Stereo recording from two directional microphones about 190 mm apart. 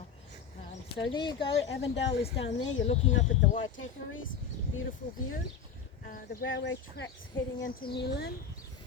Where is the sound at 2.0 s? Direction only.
70° left (ahead or behind).